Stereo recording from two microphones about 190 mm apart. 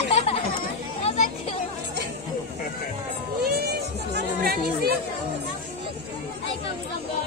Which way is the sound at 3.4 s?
55° right (ahead or behind).